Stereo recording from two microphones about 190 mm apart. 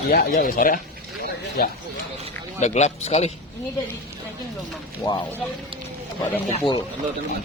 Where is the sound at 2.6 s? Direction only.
35° left (ahead or behind).